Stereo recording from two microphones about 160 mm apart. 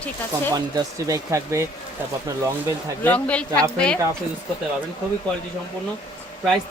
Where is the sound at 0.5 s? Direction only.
20° right (ahead or behind).